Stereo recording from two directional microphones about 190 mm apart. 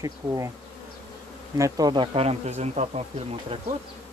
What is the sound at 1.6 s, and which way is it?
Speech, 20° right (ahead or behind).